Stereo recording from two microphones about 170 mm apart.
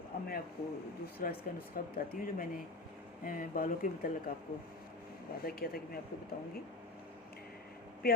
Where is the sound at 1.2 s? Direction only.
60° left (ahead or behind).